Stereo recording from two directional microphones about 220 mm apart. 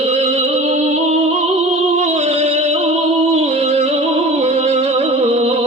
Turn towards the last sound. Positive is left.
turn(degrees=-30)  # may be behind; listen again after turning